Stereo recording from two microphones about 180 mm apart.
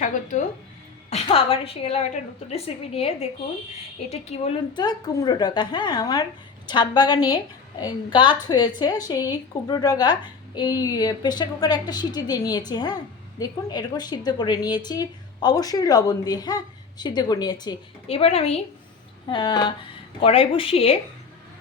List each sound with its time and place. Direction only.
0.0 s speech: 45° left (ahead or behind)
1.1 s a woman's voice: 30° left (ahead or behind)